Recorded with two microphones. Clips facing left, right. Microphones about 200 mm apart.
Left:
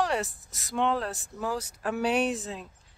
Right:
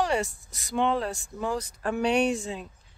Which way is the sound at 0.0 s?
Centre (ahead or behind).